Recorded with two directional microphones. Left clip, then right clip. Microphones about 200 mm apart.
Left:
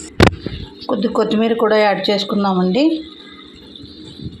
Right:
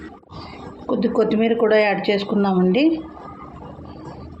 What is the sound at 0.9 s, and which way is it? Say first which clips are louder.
Speech: left 2 dB; centre (ahead or behind).